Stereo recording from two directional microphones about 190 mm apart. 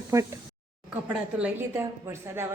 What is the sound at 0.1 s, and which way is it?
A woman's voice, 15° right (ahead or behind).